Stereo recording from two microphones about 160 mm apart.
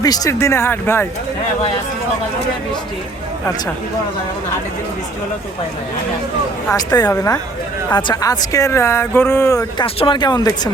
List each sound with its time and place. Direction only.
0.0 s speech: 20° left (ahead or behind)
6.7 s speech: 25° left (ahead or behind)
9.8 s speech: 35° left (ahead or behind)